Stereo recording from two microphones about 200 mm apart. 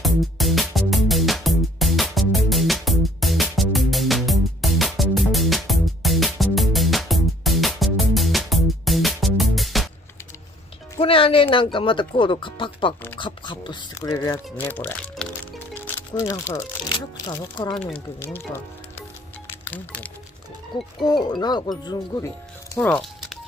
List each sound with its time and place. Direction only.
0.0 s music: centre (ahead or behind)
11.0 s music: 25° left (ahead or behind)
11.5 s speech: 25° left (ahead or behind); by 20.1 s 10° left (ahead or behind)
21.0 s speech: 20° left (ahead or behind)
22.8 s music: 5° left (ahead or behind)